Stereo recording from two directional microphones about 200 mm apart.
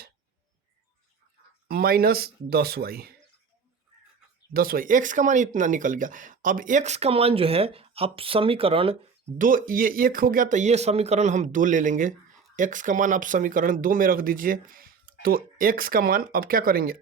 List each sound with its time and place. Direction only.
1.6 s speech: 50° right (ahead or behind)
4.5 s speech: 45° right (ahead or behind); by 9.0 s 25° right (ahead or behind)
9.4 s speech: 45° right (ahead or behind)